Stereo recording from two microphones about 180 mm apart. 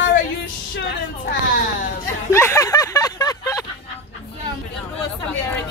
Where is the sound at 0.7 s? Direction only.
60° left (ahead or behind).